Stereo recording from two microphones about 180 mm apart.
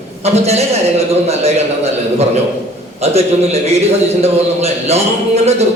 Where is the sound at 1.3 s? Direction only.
35° right (ahead or behind).